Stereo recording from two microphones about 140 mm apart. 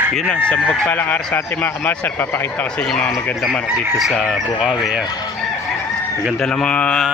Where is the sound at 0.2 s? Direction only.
5° left (ahead or behind).